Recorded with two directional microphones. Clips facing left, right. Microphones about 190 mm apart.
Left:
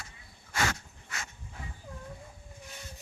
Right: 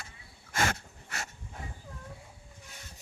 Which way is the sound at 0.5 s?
45° right (ahead or behind).